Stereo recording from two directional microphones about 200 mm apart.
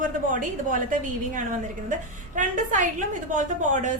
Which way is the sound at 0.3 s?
40° right (ahead or behind).